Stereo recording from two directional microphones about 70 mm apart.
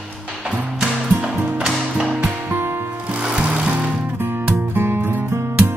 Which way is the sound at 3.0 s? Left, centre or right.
Centre.